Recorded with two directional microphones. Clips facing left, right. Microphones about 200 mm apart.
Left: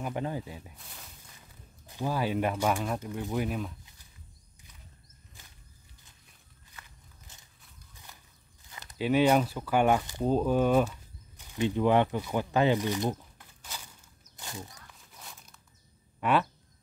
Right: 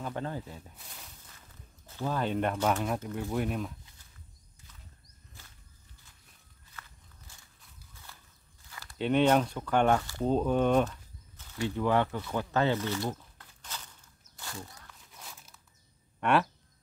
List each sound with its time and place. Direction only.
0.0 s speech: 15° left (ahead or behind)
6.7 s walk: 20° left (ahead or behind)
8.9 s speech: 5° left (ahead or behind)
14.3 s walk: 20° left (ahead or behind)
15.1 s walk: centre (ahead or behind)
16.2 s speech: centre (ahead or behind)